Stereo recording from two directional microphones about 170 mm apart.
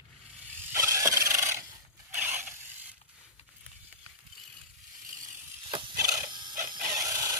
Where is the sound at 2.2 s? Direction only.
10° right (ahead or behind).